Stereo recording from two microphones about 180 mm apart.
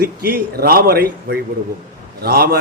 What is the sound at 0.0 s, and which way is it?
A man's voice, 55° right (ahead or behind).